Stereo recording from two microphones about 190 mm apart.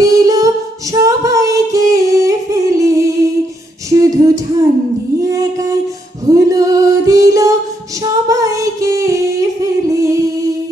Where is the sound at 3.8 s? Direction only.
15° right (ahead or behind).